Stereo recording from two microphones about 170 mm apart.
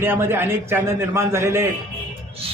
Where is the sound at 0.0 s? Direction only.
15° right (ahead or behind).